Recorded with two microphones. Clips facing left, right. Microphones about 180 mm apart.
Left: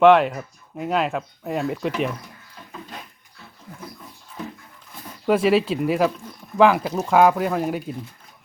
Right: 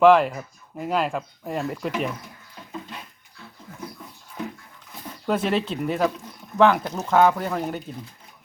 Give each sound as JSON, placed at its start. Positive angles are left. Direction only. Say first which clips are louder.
{"t": 0.0, "sound": "speech", "louder": "left 1 dB", "side_deg": 0}
{"t": 5.2, "sound": "speech", "louder": "left 5 dB", "side_deg": 10}